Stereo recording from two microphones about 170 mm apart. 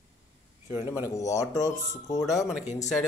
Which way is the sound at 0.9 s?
20° left (ahead or behind).